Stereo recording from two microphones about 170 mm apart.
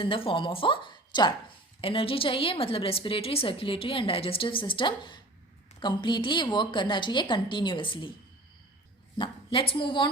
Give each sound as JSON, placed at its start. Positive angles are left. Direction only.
{"t": 0.0, "sound": "a woman's voice", "side_deg": 30}
{"t": 9.1, "sound": "a woman's voice", "side_deg": 30}